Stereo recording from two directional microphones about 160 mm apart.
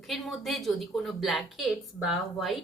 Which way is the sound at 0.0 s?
Centre (ahead or behind).